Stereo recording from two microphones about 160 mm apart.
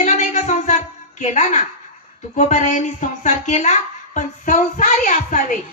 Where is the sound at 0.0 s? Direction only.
50° left (ahead or behind).